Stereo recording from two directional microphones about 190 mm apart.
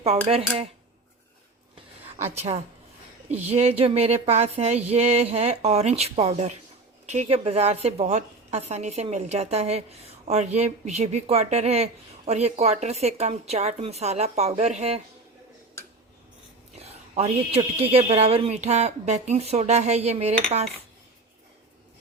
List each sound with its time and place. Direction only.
0.0 s a woman's voice: 30° right (ahead or behind)
3.2 s a woman's voice: 35° right (ahead or behind)
16.7 s a sound: 35° right (ahead or behind)
17.7 s a woman's voice: 30° right (ahead or behind)